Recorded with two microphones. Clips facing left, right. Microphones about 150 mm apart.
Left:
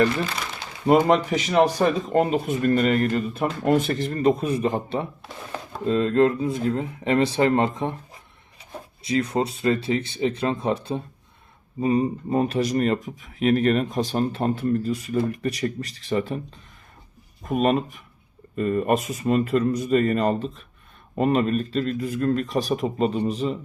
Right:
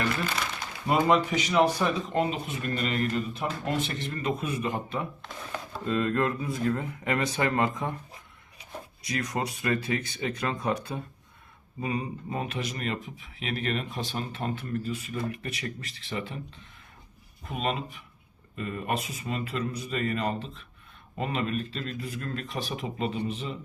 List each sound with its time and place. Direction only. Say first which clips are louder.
1.1 s speech: left 4 dB; 45° left (ahead or behind); by 7.9 s 25° left (ahead or behind)
9.0 s speech: left 8 dB; 25° left (ahead or behind)
17.4 s speech: left 10 dB; 45° left (ahead or behind)